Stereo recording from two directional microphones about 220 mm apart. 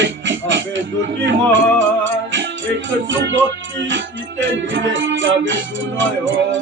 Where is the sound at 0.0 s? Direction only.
55° right (ahead or behind).